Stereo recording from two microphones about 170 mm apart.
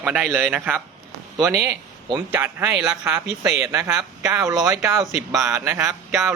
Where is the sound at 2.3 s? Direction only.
10° right (ahead or behind).